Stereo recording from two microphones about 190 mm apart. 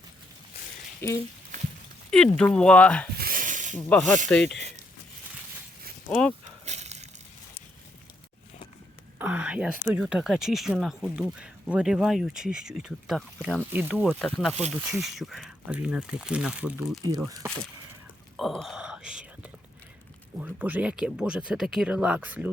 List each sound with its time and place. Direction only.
1.0 s rub: 10° left (ahead or behind)
2.0 s speech: 5° left (ahead or behind)
3.2 s chopping: 50° right (ahead or behind)
3.8 s rub: 10° left (ahead or behind)
4.3 s speech: 5° left (ahead or behind)
6.1 s speech: 5° left (ahead or behind)
6.7 s crushing: 35° right (ahead or behind)
9.1 s speech: 5° right (ahead or behind)
13.7 s speech: 10° right (ahead or behind)
14.1 s speech: 5° left (ahead or behind)
17.0 s speech: 20° right (ahead or behind)
18.3 s speech: centre (ahead or behind)